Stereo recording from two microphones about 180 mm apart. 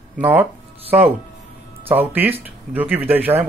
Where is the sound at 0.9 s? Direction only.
10° right (ahead or behind).